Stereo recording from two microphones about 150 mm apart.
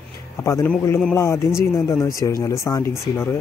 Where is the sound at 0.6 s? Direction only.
15° left (ahead or behind).